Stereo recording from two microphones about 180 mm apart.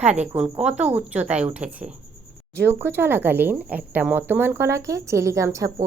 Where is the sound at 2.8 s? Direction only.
10° right (ahead or behind).